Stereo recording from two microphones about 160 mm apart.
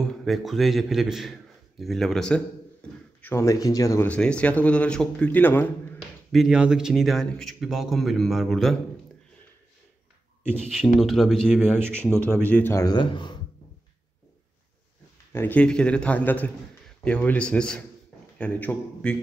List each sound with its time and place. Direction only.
0.0 s speech: centre (ahead or behind)
2.8 s a sound: 5° left (ahead or behind)
3.2 s speech: 15° left (ahead or behind)
4.1 s speech: 5° left (ahead or behind)
5.9 s speech: centre (ahead or behind)
10.5 s speech: 5° left (ahead or behind)
12.8 s speech: 30° left (ahead or behind)
15.3 s speech: 10° left (ahead or behind)